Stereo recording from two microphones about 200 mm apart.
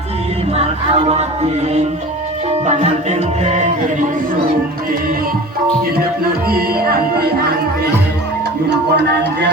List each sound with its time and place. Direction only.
0.5 s music: 30° right (ahead or behind)
2.6 s music: 35° right (ahead or behind)
6.5 s music: 50° right (ahead or behind)
8.7 s speech: 55° right (ahead or behind)